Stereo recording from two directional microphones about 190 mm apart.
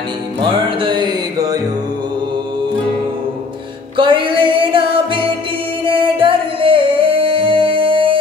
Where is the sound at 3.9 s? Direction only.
25° right (ahead or behind).